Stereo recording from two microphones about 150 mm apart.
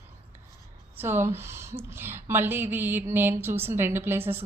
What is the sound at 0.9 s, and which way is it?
A woman's voice, 15° right (ahead or behind).